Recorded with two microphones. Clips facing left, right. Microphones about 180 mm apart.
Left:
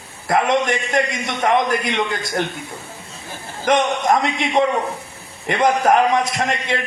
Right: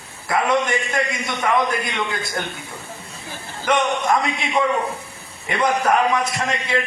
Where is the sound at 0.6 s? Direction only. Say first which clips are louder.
Left 3 dB; 35° left (ahead or behind).